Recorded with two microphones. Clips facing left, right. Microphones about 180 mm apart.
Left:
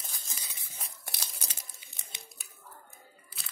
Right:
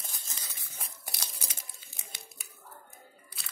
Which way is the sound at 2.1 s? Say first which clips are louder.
Left 1 dB; 20° left (ahead or behind).